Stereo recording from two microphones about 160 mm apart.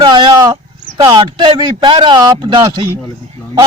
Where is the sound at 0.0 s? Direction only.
30° right (ahead or behind).